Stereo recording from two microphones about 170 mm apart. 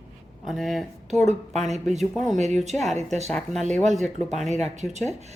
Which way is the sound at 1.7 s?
40° right (ahead or behind).